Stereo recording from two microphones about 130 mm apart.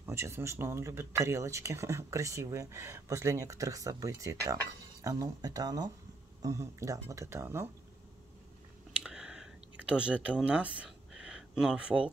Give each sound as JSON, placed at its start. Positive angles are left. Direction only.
{"t": 0.0, "sound": "speech", "side_deg": -20}
{"t": 8.9, "sound": "clicking", "side_deg": -5}